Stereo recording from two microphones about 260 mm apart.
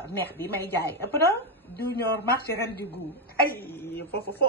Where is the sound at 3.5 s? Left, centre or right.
Centre.